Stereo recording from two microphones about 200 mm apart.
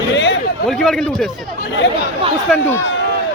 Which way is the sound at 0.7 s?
Centre (ahead or behind).